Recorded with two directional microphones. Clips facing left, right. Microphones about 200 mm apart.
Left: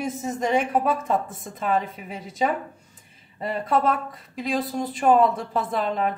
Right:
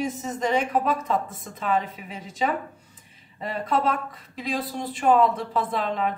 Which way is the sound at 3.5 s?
45° left (ahead or behind).